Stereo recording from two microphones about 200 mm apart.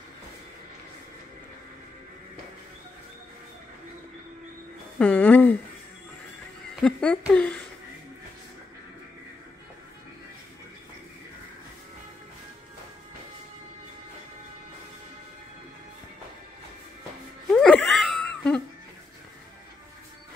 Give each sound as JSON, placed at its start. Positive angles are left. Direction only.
{"t": 4.9, "sound": "a sound", "side_deg": 5}
{"t": 6.8, "sound": "speech", "side_deg": 5}
{"t": 17.5, "sound": "laughter", "side_deg": 5}